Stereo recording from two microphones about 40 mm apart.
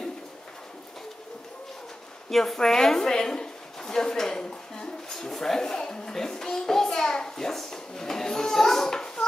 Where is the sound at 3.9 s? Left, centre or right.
Centre.